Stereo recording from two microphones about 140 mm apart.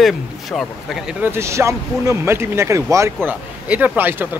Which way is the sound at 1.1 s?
15° right (ahead or behind).